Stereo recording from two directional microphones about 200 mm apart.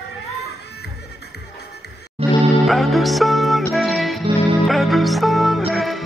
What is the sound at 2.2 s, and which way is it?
Music, 30° right (ahead or behind).